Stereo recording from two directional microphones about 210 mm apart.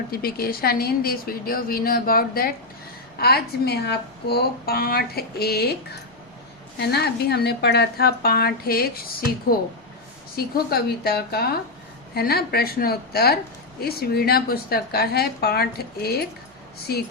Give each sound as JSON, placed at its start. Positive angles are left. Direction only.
{"t": 0.1, "sound": "speech", "side_deg": 45}
{"t": 6.7, "sound": "speech", "side_deg": 50}